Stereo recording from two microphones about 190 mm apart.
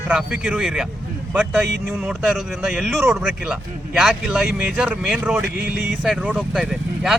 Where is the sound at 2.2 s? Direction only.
5° right (ahead or behind).